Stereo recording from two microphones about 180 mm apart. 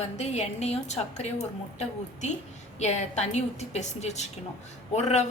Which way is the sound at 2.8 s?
40° left (ahead or behind).